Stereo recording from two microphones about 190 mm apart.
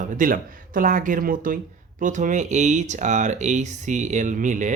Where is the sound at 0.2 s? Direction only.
45° right (ahead or behind).